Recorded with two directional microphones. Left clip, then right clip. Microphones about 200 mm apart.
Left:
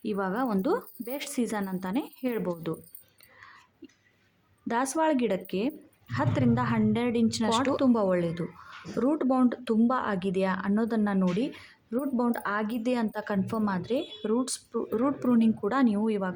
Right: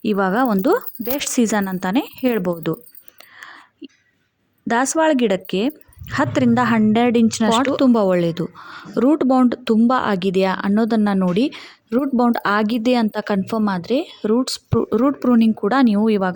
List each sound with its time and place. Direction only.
0.0 s a woman's voice: 35° right (ahead or behind)
3.3 s whispering: 35° right (ahead or behind)
4.7 s a woman's voice: 30° right (ahead or behind)